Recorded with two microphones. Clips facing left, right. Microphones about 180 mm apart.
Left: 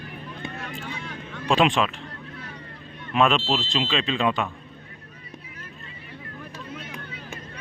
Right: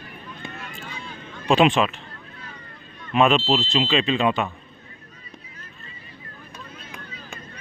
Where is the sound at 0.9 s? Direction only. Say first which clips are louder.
Left 3 dB; 75° left (ahead or behind).